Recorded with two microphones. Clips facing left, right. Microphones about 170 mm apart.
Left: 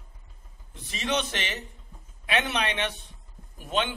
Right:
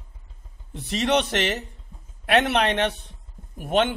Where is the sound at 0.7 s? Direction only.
65° right (ahead or behind).